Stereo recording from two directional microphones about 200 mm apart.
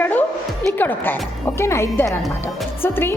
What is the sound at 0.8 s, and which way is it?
Speech, 10° left (ahead or behind).